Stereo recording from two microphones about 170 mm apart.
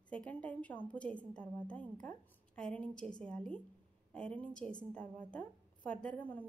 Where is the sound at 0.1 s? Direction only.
5° left (ahead or behind).